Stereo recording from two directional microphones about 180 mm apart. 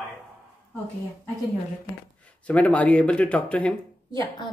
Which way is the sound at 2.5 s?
5° left (ahead or behind).